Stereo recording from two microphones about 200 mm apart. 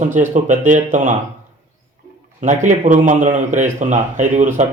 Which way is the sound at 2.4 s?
40° right (ahead or behind).